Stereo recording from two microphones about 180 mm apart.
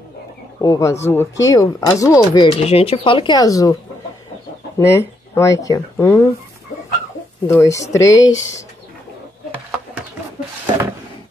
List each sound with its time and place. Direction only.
0.6 s speech: 20° left (ahead or behind)
2.6 s speech: 35° left (ahead or behind)
4.7 s speech: 15° left (ahead or behind)
7.4 s speech: 15° left (ahead or behind)
8.2 s speech: 90° left